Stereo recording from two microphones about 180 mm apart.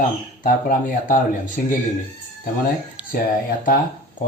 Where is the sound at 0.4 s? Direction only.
45° left (ahead or behind).